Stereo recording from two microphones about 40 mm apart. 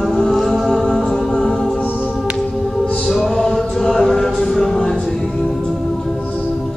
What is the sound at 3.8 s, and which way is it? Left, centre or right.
Music, centre.